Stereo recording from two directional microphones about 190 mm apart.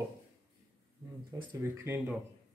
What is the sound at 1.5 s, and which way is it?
Speech, 10° right (ahead or behind).